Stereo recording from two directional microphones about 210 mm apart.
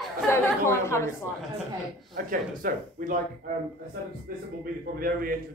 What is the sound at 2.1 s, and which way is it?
Speech, 40° right (ahead or behind).